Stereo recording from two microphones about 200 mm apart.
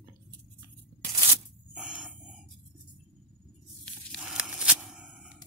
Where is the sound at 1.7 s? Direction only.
5° right (ahead or behind).